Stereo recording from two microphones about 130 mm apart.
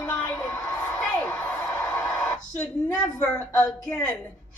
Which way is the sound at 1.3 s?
20° left (ahead or behind).